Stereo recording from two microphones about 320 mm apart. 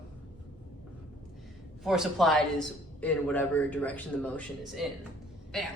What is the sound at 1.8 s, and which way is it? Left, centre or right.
A man's voice, centre.